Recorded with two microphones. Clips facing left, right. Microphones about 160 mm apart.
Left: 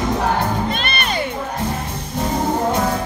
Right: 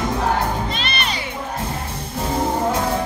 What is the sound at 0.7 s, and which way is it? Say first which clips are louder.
Music: left 3 dB; 50° left (ahead or behind).